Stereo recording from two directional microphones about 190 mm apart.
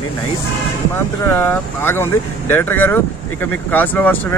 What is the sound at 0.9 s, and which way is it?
Speech, 10° left (ahead or behind).